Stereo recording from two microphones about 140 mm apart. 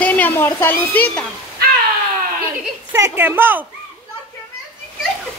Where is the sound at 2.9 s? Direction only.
20° right (ahead or behind).